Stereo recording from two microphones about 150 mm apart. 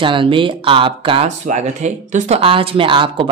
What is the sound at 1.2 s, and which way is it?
Speech, 50° right (ahead or behind).